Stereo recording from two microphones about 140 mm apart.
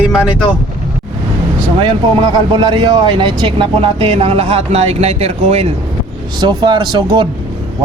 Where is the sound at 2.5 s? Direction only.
30° right (ahead or behind).